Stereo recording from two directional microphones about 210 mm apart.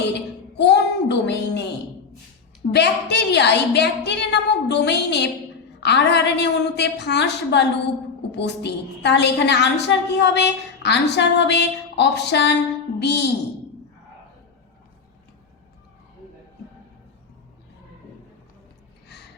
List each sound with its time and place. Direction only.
0.5 s a child's voice: 55° left (ahead or behind)
2.7 s a woman's voice: 55° left (ahead or behind)